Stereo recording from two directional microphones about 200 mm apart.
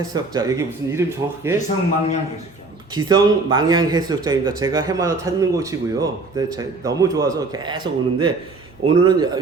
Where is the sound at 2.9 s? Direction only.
20° right (ahead or behind).